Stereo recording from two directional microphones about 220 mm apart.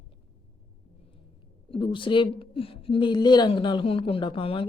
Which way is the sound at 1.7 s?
25° left (ahead or behind).